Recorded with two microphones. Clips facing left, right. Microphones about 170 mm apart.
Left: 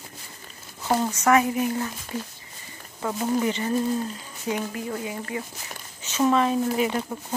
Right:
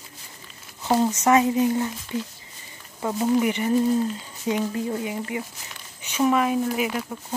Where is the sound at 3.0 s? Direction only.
15° right (ahead or behind).